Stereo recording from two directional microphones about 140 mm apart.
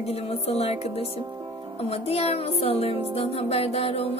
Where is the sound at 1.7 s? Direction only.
45° left (ahead or behind).